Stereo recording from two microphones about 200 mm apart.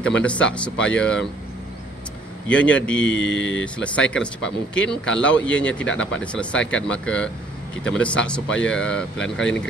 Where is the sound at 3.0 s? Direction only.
65° left (ahead or behind).